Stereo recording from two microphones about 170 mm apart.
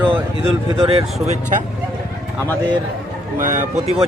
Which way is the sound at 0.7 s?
35° right (ahead or behind).